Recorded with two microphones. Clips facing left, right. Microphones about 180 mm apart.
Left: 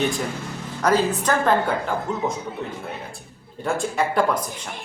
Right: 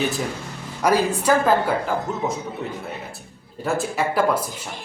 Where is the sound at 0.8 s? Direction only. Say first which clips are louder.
Right 1 dB; 10° right (ahead or behind).